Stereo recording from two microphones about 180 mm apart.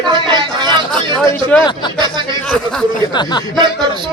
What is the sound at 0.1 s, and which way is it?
Chatter, 25° right (ahead or behind).